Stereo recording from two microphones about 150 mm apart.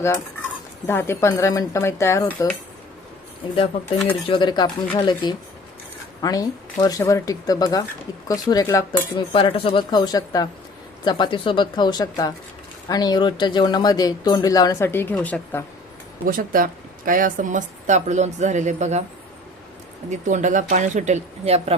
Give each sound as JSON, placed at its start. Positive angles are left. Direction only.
{"t": 0.9, "sound": "speech", "side_deg": 15}
{"t": 4.1, "sound": "speech", "side_deg": 35}
{"t": 16.2, "sound": "speech", "side_deg": -65}
{"t": 20.1, "sound": "speech", "side_deg": -55}